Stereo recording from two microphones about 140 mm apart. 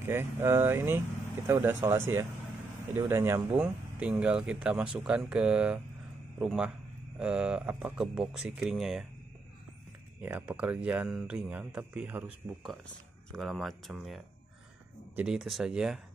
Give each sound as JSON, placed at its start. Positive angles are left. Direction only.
{"t": 0.0, "sound": "speech", "side_deg": -15}
{"t": 3.5, "sound": "speech", "side_deg": -5}
{"t": 10.2, "sound": "speech", "side_deg": -10}
{"t": 13.3, "sound": "speech", "side_deg": 0}